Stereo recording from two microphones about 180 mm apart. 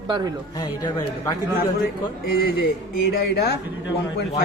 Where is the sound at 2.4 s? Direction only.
60° left (ahead or behind).